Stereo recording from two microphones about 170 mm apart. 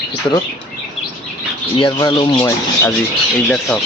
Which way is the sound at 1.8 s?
30° left (ahead or behind).